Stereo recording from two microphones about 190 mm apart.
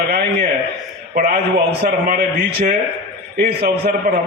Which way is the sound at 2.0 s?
60° right (ahead or behind).